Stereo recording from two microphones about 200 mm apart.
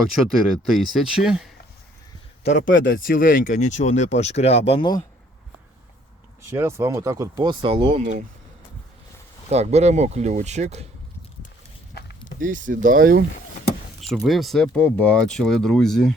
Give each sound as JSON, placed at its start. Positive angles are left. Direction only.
{"t": 0.0, "sound": "speech", "side_deg": 0}
{"t": 2.5, "sound": "speech", "side_deg": 40}
{"t": 2.8, "sound": "speech", "side_deg": 50}
{"t": 6.4, "sound": "speech", "side_deg": -15}
{"t": 9.5, "sound": "speech", "side_deg": -30}
{"t": 12.4, "sound": "speech", "side_deg": -40}
{"t": 14.1, "sound": "speech", "side_deg": 0}